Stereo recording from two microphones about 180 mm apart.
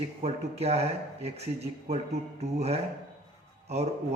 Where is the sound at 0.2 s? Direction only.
35° right (ahead or behind).